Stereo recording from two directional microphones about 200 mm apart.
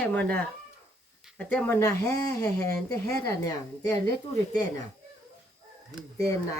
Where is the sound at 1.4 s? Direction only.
5° left (ahead or behind).